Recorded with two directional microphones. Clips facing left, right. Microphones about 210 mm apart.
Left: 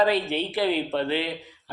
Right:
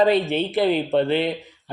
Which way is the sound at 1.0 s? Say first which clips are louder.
Right 5 dB; 55° right (ahead or behind).